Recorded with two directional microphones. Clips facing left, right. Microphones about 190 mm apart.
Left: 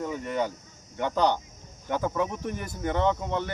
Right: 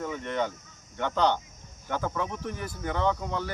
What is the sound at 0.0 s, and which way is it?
Speech, 10° left (ahead or behind).